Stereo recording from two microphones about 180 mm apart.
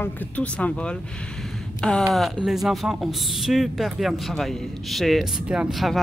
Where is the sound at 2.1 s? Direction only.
Centre (ahead or behind).